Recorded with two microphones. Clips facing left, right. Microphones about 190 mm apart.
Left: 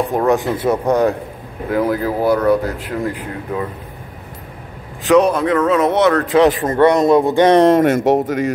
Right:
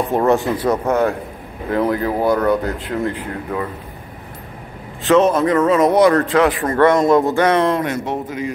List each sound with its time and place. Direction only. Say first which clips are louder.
0.1 s speech: right 2 dB; centre (ahead or behind)
0.7 s speech: left 2 dB; 15° left (ahead or behind)
1.7 s speech: left 1 dB; 5° left (ahead or behind)
5.0 s speech: left 1 dB; centre (ahead or behind)
6.2 s speech: left 3 dB; 20° left (ahead or behind)
7.4 s speech: left 6 dB; 40° left (ahead or behind)
8.0 s a man's voice: left 8 dB; 85° left